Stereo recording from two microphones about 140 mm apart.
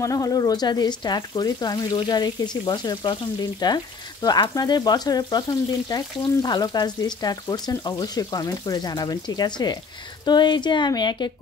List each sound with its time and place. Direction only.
0.0 s speech: 25° left (ahead or behind)